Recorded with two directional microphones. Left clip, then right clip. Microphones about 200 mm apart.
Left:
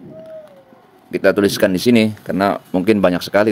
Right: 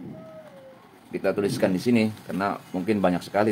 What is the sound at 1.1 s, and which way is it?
Speech, 50° left (ahead or behind).